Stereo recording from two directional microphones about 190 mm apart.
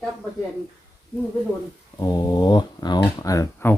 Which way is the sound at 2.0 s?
20° left (ahead or behind).